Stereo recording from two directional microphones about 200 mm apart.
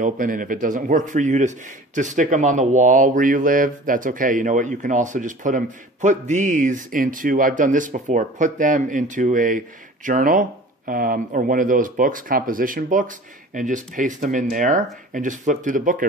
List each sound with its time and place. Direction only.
0.0 s speech: 40° right (ahead or behind)